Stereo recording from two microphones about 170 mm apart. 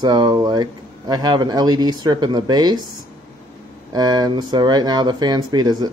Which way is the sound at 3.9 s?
25° right (ahead or behind).